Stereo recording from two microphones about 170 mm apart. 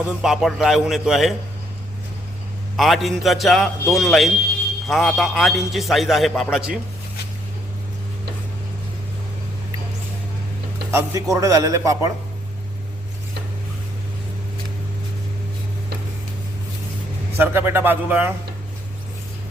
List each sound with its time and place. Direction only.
0.2 s a man's voice: centre (ahead or behind)
2.7 s a man's voice: centre (ahead or behind)
10.9 s a man's voice: 20° right (ahead or behind)
17.3 s speech: 10° right (ahead or behind)